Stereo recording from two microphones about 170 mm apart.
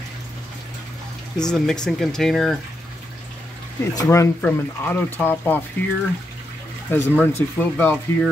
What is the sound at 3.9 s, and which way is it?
Speech, 20° left (ahead or behind).